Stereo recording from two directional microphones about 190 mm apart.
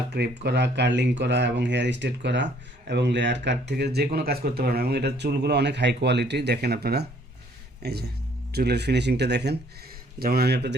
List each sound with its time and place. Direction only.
0.1 s speech: 60° right (ahead or behind)